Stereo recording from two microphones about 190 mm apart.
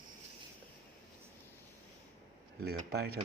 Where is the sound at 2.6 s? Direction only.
55° right (ahead or behind).